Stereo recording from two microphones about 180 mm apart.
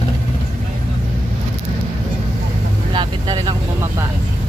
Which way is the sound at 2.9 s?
25° right (ahead or behind).